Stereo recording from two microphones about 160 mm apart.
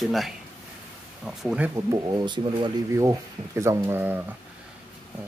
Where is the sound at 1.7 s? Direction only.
20° right (ahead or behind).